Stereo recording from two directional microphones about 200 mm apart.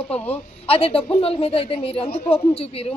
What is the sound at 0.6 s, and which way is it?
Speech, 30° left (ahead or behind).